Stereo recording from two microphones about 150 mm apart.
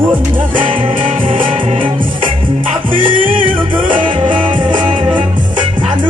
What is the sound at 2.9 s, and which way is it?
Music, 35° right (ahead or behind).